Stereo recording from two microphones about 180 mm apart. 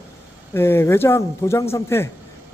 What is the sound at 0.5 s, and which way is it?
A man's voice, 15° left (ahead or behind).